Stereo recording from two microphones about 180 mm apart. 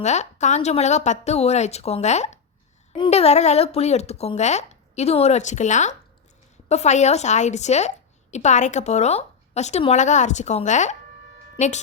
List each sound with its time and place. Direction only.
0.0 s a woman's voice: 40° left (ahead or behind)